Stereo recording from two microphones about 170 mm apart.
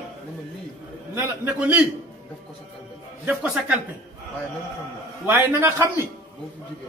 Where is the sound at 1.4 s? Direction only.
10° right (ahead or behind).